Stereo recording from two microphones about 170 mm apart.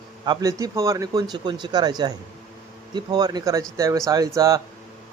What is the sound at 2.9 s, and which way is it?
Speech, 25° right (ahead or behind).